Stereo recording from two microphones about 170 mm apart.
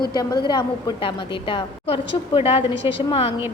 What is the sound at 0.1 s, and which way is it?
A woman's voice, 20° left (ahead or behind).